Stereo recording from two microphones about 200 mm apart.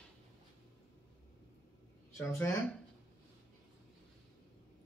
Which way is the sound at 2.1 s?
15° left (ahead or behind).